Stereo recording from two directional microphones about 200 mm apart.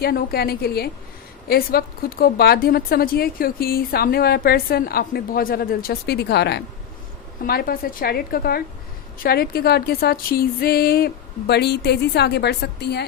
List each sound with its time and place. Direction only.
0.0 s a woman's voice: 50° left (ahead or behind)